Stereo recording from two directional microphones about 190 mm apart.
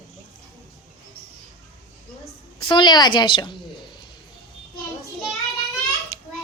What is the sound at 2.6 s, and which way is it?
Speech, 25° left (ahead or behind).